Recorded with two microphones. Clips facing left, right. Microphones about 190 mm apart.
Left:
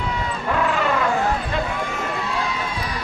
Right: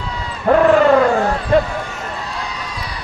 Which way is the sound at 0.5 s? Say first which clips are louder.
Right 11 dB; 50° right (ahead or behind).